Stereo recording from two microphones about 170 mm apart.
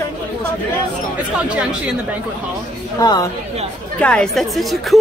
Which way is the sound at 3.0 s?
20° left (ahead or behind).